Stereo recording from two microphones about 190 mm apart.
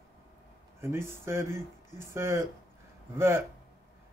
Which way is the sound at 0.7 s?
15° right (ahead or behind).